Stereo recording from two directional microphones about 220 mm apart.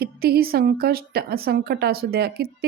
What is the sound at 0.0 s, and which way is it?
Speech, 45° right (ahead or behind).